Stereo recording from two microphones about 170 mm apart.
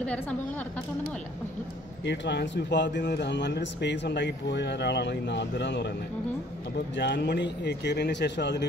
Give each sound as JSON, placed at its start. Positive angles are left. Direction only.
{"t": 0.0, "sound": "a woman's voice", "side_deg": 5}
{"t": 2.0, "sound": "speech", "side_deg": 90}
{"t": 7.0, "sound": "speech", "side_deg": 90}